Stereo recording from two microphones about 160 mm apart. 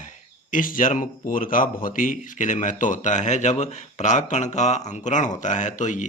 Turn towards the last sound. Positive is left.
turn(degrees=50)  # may be behind; listen again after turning